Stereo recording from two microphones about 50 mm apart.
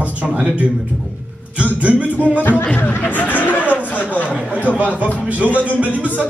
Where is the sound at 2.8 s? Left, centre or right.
Left.